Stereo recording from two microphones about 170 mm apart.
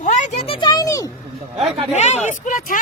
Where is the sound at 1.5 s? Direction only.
35° right (ahead or behind).